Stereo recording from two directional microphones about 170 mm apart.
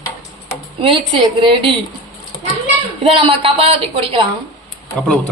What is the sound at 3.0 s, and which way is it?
A woman's voice, 35° right (ahead or behind).